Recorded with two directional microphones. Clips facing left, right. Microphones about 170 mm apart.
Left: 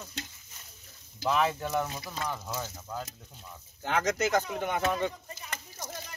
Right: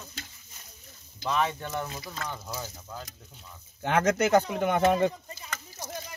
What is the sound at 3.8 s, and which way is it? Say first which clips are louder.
Speech: right 4 dB; 55° right (ahead or behind).